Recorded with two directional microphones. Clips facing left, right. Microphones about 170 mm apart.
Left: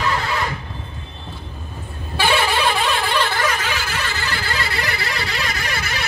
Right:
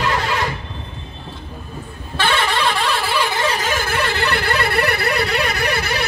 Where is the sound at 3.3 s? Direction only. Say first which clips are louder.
Right 1 dB; 25° right (ahead or behind).